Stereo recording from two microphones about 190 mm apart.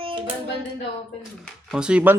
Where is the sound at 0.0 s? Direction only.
25° right (ahead or behind).